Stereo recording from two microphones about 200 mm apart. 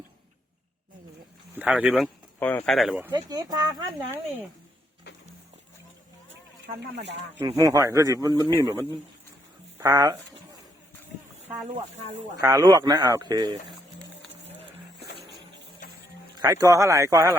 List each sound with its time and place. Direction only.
1.5 s speech: 5° right (ahead or behind)
2.4 s speech: 10° left (ahead or behind)
3.1 s speech: 20° right (ahead or behind)
7.3 s speech: 15° right (ahead or behind)
12.4 s speech: 15° right (ahead or behind)
16.4 s speech: 15° right (ahead or behind)